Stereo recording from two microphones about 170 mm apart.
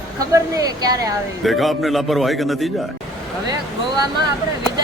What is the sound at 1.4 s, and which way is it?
A man's voice, centre (ahead or behind).